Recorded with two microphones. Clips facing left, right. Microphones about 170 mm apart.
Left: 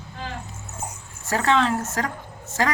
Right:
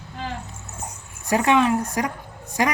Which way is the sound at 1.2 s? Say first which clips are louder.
Right 3 dB; 15° right (ahead or behind).